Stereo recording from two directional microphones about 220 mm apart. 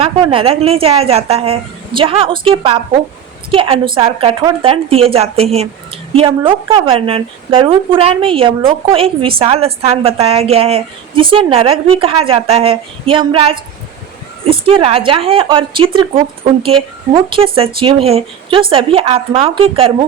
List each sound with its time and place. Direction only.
0.0 s a woman's voice: 25° right (ahead or behind)